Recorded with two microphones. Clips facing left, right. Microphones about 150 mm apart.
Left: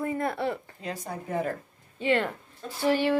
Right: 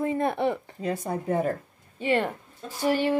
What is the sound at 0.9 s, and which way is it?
Speech, 55° right (ahead or behind).